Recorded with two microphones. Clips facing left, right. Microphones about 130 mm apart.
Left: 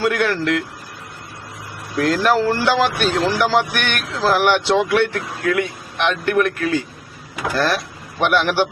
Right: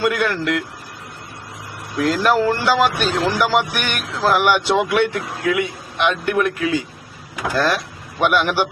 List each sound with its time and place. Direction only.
0.0 s speech: 10° right (ahead or behind)
2.0 s speech: centre (ahead or behind)
6.4 s a man's voice: 60° left (ahead or behind)
8.3 s speech: 10° right (ahead or behind)